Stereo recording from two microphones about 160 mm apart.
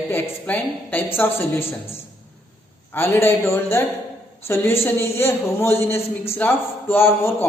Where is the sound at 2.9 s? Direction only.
15° left (ahead or behind).